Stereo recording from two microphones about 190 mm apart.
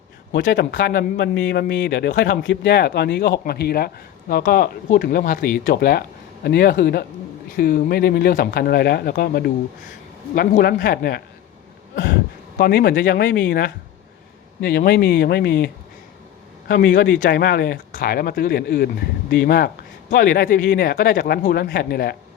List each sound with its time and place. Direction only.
0.3 s speech: 60° left (ahead or behind)
1.1 s speech: 70° left (ahead or behind); by 11.2 s 50° left (ahead or behind)
12.5 s speech: 55° left (ahead or behind)
16.6 s speech: 45° left (ahead or behind)